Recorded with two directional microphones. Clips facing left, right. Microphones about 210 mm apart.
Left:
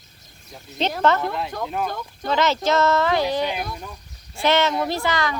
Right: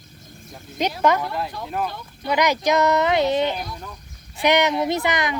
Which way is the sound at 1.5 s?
45° left (ahead or behind).